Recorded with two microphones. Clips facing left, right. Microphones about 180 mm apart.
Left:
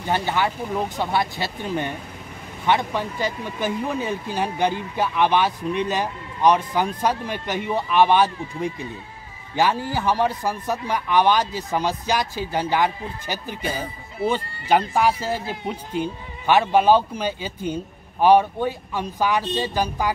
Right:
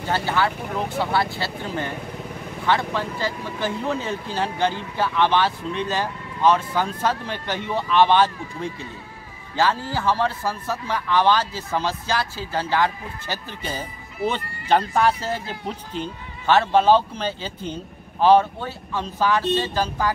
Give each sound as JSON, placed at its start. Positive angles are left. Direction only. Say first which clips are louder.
{"t": 0.0, "sound": "speech", "louder": "even", "side_deg": 20}